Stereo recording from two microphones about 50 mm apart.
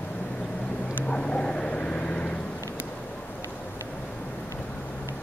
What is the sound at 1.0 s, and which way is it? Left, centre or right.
Vehicle, centre.